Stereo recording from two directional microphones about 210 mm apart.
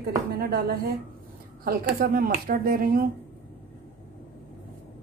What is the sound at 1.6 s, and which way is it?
Speech, 45° right (ahead or behind).